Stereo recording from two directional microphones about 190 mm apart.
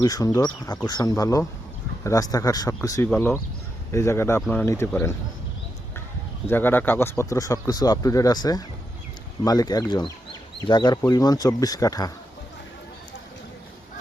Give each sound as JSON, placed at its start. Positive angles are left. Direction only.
{"t": 0.0, "sound": "speech", "side_deg": 20}
{"t": 6.5, "sound": "speech", "side_deg": 10}